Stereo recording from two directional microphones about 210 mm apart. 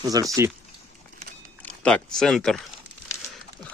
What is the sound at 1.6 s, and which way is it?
Speech, 5° left (ahead or behind).